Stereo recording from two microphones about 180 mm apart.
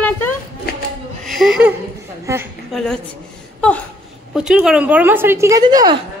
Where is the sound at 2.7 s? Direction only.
5° left (ahead or behind).